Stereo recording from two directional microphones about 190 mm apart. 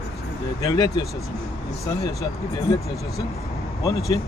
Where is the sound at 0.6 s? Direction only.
20° left (ahead or behind).